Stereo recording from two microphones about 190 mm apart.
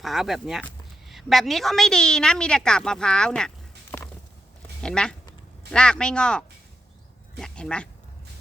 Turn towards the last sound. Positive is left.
turn(degrees=5)  # may be behind; listen again after turning